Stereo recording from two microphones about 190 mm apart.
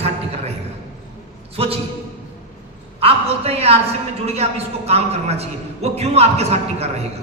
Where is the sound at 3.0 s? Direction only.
30° right (ahead or behind).